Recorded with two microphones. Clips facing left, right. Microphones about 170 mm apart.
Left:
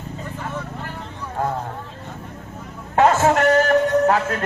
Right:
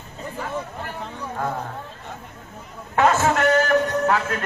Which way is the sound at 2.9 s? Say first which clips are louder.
Left 3 dB; 35° left (ahead or behind).